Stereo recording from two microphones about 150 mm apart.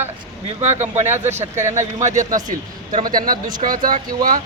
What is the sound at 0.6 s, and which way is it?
Speech, 45° right (ahead or behind).